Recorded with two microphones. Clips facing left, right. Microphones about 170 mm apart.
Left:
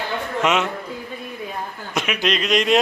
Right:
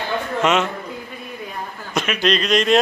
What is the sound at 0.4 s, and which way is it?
Speech, 5° left (ahead or behind).